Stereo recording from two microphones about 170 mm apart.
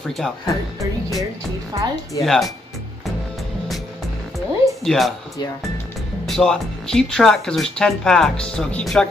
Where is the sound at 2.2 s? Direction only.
Centre (ahead or behind).